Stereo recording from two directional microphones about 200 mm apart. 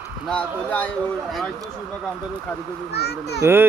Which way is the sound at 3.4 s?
10° right (ahead or behind).